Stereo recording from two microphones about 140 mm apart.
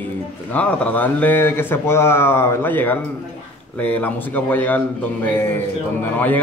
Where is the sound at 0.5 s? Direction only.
10° left (ahead or behind).